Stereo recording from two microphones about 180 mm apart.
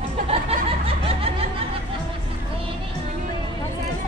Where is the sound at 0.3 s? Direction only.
30° right (ahead or behind).